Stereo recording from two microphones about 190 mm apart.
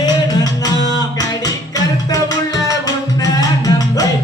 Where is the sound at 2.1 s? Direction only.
20° left (ahead or behind).